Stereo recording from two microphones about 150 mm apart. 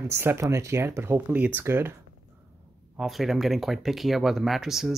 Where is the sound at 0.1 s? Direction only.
15° right (ahead or behind).